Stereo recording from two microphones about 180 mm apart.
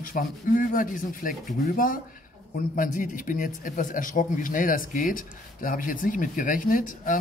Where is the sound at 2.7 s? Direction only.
45° left (ahead or behind).